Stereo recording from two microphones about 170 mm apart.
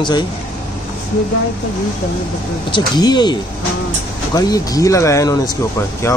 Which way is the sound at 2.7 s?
25° left (ahead or behind).